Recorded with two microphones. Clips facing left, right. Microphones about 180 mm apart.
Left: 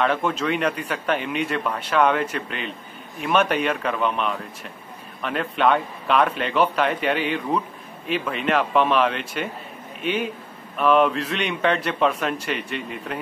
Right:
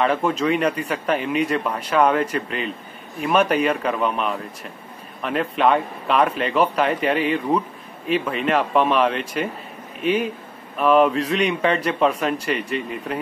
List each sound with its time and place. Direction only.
0.0 s speech: centre (ahead or behind)